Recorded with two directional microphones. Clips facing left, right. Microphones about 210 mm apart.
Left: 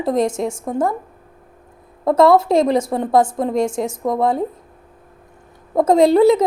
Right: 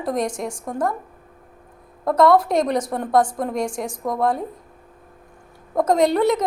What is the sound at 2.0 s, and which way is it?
A woman's voice, 25° left (ahead or behind).